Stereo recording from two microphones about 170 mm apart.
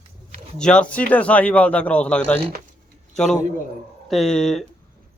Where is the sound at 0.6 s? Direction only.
5° left (ahead or behind).